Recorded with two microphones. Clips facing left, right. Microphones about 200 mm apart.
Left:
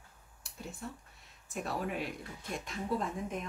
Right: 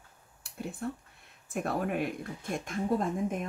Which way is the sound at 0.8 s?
60° right (ahead or behind).